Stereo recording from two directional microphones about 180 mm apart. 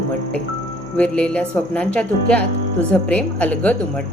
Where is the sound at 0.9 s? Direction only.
5° left (ahead or behind).